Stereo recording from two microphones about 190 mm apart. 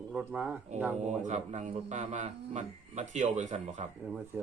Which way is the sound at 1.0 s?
40° right (ahead or behind).